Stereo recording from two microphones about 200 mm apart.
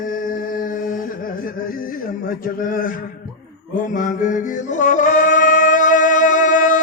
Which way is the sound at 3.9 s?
40° left (ahead or behind).